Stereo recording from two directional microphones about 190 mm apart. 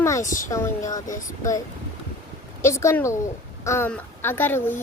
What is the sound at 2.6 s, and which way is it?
Speech, 15° left (ahead or behind).